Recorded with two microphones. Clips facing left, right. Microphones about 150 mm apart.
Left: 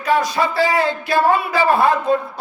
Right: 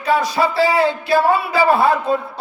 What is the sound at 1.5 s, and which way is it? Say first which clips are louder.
Speech: right 1 dB; 5° right (ahead or behind).